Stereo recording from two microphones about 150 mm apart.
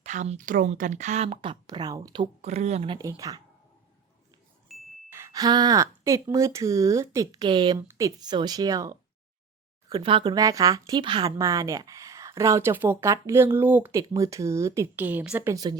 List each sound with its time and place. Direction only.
0.0 s a woman's voice: 50° right (ahead or behind); by 2.2 s 25° right (ahead or behind)
2.4 s a woman's voice: 45° right (ahead or behind)
3.2 s speech: 25° right (ahead or behind)
4.7 s ding: centre (ahead or behind)
5.0 s speech: 20° right (ahead or behind)
7.8 s speech: 20° right (ahead or behind)
9.9 s speech: 35° right (ahead or behind)
11.3 s speech: 25° right (ahead or behind)